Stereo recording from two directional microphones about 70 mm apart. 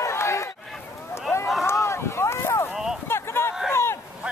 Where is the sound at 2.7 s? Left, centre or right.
Centre.